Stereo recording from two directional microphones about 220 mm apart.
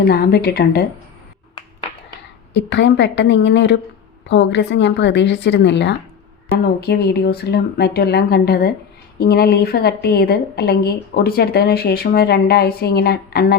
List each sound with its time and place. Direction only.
0.1 s a woman's voice: 45° left (ahead or behind)
2.5 s a woman's voice: 55° left (ahead or behind)